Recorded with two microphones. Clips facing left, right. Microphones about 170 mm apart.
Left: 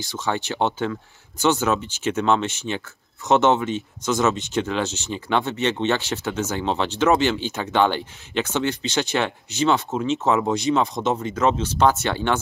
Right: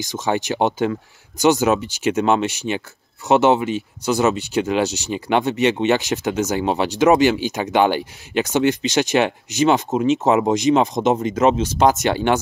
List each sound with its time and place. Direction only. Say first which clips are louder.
0.1 s speech: right 4 dB; 15° right (ahead or behind)